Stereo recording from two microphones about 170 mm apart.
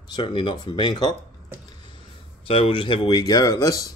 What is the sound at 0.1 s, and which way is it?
Speech, 25° left (ahead or behind).